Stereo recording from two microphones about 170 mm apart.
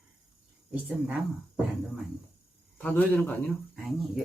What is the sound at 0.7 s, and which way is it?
Speech, 10° right (ahead or behind).